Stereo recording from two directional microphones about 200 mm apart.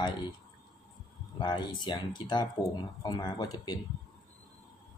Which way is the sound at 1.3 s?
20° left (ahead or behind).